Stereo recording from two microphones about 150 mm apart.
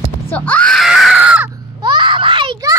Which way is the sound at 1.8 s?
30° right (ahead or behind).